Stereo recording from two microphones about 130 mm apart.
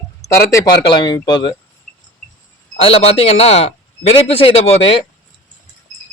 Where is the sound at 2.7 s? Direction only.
50° left (ahead or behind).